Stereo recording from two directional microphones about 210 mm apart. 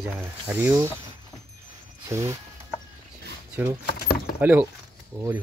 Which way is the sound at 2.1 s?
15° right (ahead or behind).